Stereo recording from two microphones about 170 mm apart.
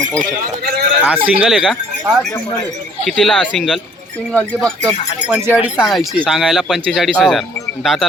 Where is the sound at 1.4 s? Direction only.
Centre (ahead or behind).